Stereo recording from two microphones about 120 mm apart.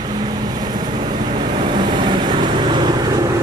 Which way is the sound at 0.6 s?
35° right (ahead or behind).